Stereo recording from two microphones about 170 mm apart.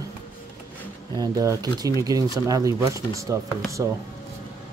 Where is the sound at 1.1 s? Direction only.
20° right (ahead or behind).